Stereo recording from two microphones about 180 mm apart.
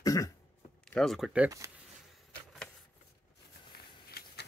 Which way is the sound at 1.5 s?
20° right (ahead or behind).